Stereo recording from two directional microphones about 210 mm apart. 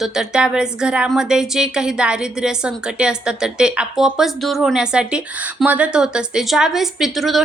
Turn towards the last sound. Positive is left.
turn(degrees=0)  # may be behind; listen again after turning